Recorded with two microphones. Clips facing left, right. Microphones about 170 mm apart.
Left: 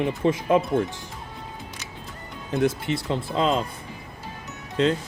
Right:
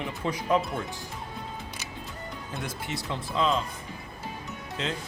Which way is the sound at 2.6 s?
25° left (ahead or behind).